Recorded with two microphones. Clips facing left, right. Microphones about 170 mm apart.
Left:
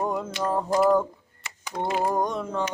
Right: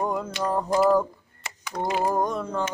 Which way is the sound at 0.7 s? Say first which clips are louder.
Even; centre (ahead or behind).